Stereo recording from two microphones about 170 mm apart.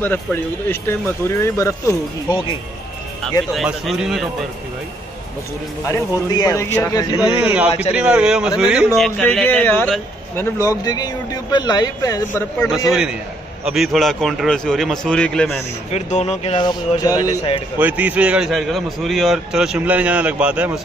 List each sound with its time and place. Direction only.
0.0 s speech: 10° left (ahead or behind)
3.5 s speech: centre (ahead or behind)
5.9 s a man's voice: 20° left (ahead or behind)
7.2 s a man's voice: 5° right (ahead or behind)
10.3 s a man's voice: 15° left (ahead or behind)
13.7 s speech: centre (ahead or behind)
15.9 s a man's voice: 40° left (ahead or behind); by 17.5 s 20° left (ahead or behind)
17.7 s a man's voice: 10° right (ahead or behind)